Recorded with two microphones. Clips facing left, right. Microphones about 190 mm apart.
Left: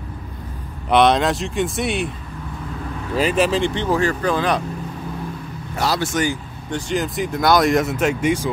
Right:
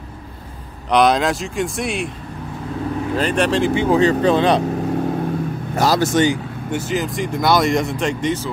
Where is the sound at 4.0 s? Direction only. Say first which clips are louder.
Right 5 dB; 25° right (ahead or behind).